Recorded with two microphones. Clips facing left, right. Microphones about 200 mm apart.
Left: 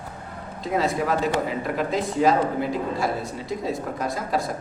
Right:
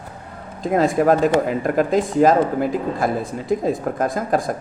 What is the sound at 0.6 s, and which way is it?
Speech, 50° right (ahead or behind).